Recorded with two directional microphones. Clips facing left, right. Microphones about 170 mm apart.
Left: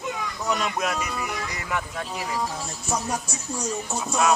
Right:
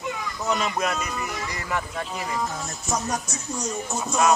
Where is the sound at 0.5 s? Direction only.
Centre (ahead or behind).